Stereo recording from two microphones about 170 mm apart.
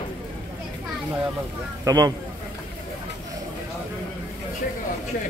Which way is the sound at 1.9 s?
20° right (ahead or behind).